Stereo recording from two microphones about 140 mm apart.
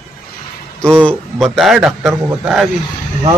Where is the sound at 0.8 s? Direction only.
10° left (ahead or behind).